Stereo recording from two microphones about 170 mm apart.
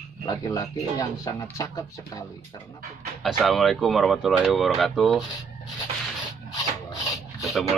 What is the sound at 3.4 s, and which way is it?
Speech, centre (ahead or behind).